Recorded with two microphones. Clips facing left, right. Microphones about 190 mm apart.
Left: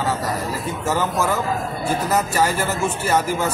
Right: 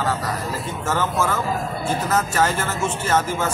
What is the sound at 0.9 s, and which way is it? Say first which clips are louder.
Speech: left 1 dB; 15° left (ahead or behind).